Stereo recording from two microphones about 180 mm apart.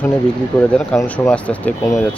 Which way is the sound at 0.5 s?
10° left (ahead or behind).